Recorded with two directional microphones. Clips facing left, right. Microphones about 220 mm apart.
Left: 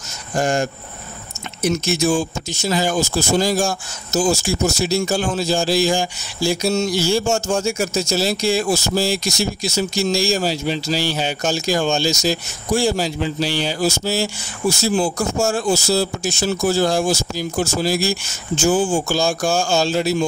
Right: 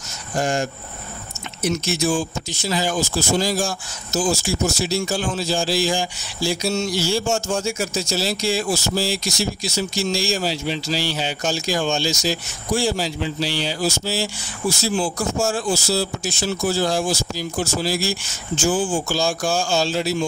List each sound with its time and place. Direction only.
0.4 s a man's voice: 45° left (ahead or behind)
1.7 s a man's voice: 45° left (ahead or behind)